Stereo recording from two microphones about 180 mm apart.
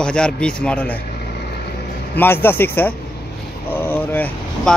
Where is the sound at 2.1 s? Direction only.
10° left (ahead or behind).